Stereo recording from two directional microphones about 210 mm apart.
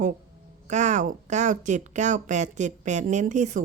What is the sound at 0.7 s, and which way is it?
Speech, 35° right (ahead or behind).